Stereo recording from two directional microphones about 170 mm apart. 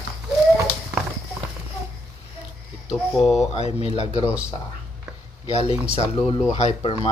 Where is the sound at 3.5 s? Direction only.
35° left (ahead or behind).